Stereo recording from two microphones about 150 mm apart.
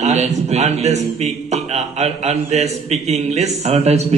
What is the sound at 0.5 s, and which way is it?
A man's voice, 45° right (ahead or behind).